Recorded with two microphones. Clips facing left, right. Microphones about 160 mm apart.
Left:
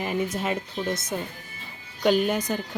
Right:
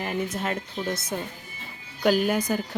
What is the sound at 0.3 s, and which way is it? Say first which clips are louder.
A woman's voice: left 1 dB; 5° left (ahead or behind).